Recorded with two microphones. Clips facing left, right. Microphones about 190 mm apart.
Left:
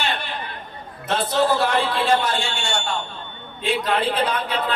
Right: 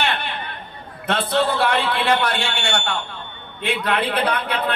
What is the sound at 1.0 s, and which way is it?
A man's voice, 60° right (ahead or behind).